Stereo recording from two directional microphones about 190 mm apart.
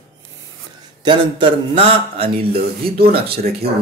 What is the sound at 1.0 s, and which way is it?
Speech, 25° right (ahead or behind).